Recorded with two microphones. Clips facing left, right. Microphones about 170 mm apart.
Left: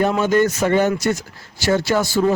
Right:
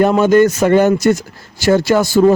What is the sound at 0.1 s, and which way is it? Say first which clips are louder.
Speech: right 6 dB; 45° right (ahead or behind).